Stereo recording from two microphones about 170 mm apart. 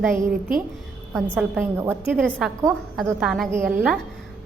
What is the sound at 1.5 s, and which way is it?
Speech, 15° right (ahead or behind).